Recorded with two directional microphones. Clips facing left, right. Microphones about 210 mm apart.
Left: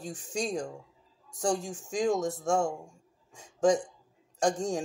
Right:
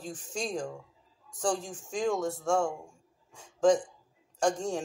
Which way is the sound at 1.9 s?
15° left (ahead or behind).